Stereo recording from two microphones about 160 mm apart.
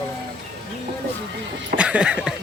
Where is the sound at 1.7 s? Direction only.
5° right (ahead or behind).